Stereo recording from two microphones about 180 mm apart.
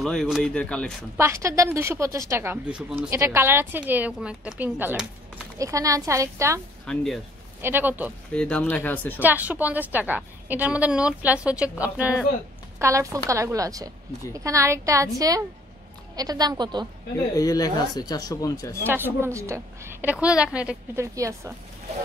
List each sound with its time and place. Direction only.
0.0 s speech: centre (ahead or behind)
1.1 s a woman's voice: 15° right (ahead or behind)
6.9 s speech: 5° left (ahead or behind)
7.6 s a woman's voice: 10° right (ahead or behind)
8.3 s speech: 5° left (ahead or behind)
9.2 s a woman's voice: 10° right (ahead or behind)
17.4 s speech: 20° left (ahead or behind)
18.9 s a woman's voice: 10° right (ahead or behind)